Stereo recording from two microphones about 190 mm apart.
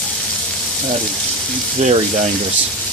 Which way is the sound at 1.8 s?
40° right (ahead or behind).